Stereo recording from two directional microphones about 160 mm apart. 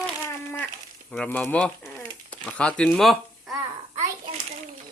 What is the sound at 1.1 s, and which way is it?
Speech, 5° left (ahead or behind).